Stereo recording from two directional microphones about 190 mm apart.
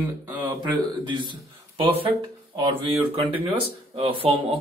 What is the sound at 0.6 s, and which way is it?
A man's voice, 25° right (ahead or behind).